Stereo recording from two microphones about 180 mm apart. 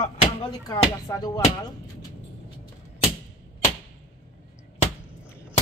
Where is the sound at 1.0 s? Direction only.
20° left (ahead or behind).